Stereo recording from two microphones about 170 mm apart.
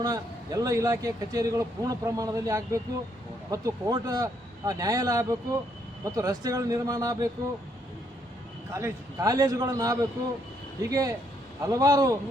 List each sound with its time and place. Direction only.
0.0 s a man's voice: 20° right (ahead or behind)
8.7 s a man's voice: 20° right (ahead or behind)